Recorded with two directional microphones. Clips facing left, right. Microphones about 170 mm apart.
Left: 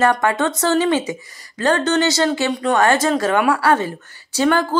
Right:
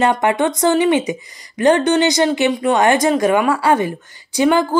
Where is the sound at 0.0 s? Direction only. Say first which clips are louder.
Right 2 dB; 15° right (ahead or behind).